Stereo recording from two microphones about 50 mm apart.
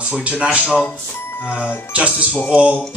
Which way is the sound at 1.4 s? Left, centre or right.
Left.